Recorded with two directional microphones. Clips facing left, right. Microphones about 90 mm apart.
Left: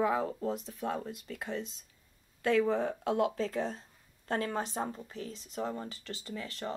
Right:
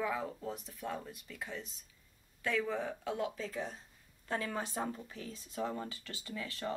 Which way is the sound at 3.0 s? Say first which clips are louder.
Left 9 dB; 60° left (ahead or behind).